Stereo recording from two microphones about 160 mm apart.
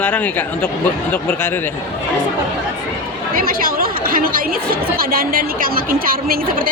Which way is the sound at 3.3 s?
65° right (ahead or behind).